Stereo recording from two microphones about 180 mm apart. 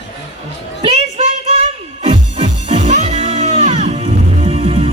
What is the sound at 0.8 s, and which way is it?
Speech, 35° right (ahead or behind).